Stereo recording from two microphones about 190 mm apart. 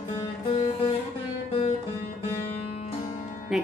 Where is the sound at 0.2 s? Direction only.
30° left (ahead or behind).